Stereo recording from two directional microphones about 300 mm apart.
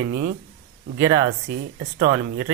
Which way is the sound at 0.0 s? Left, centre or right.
Right.